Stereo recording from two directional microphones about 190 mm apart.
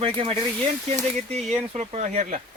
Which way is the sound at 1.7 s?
35° right (ahead or behind).